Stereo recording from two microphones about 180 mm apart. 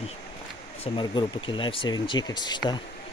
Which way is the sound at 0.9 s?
25° left (ahead or behind).